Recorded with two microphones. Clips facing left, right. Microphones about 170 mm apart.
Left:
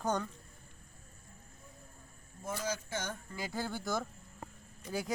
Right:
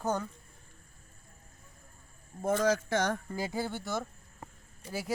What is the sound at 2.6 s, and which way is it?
Speech, 80° right.